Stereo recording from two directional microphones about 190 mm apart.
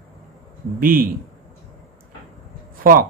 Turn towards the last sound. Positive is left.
turn(degrees=-50)  # may be behind; listen again after turning